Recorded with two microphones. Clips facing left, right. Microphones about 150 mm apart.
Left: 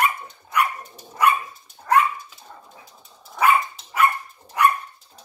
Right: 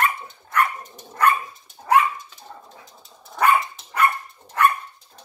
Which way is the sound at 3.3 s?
5° left (ahead or behind).